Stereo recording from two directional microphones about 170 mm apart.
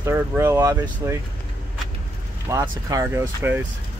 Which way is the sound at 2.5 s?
20° right (ahead or behind).